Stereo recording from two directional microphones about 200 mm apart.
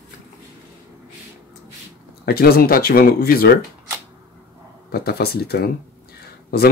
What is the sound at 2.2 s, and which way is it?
Speech, 50° left (ahead or behind).